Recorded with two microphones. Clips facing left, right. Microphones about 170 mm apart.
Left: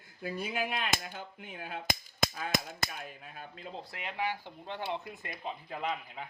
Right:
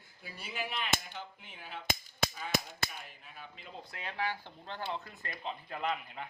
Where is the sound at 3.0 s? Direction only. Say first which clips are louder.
Left 5 dB; 55° left (ahead or behind).